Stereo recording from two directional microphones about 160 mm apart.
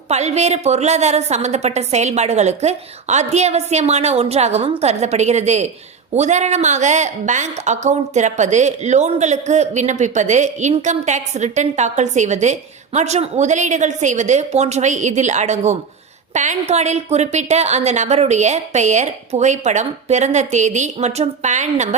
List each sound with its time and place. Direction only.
0.1 s a woman's voice: 45° right (ahead or behind)